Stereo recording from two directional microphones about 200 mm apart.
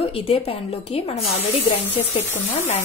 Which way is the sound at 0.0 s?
30° left (ahead or behind).